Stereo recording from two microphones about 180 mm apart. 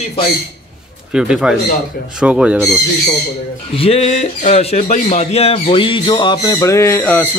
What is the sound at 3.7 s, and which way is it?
Speech, 30° left (ahead or behind).